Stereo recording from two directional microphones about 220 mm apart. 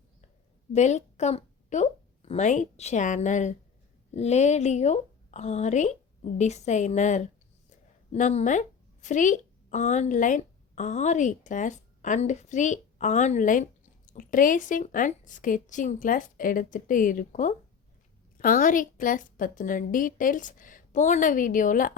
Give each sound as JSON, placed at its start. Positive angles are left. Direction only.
{"t": 0.7, "sound": "a woman's voice", "side_deg": 30}